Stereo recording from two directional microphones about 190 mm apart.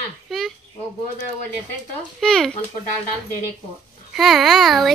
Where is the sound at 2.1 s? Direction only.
Centre (ahead or behind).